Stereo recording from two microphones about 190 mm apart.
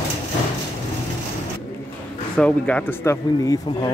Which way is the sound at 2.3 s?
5° left (ahead or behind).